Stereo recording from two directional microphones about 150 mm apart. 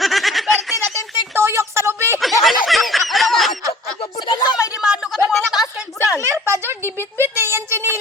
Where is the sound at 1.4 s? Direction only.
15° right (ahead or behind).